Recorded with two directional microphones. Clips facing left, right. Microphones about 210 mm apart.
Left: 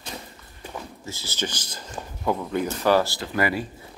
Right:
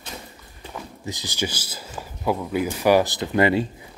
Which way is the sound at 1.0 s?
15° right (ahead or behind).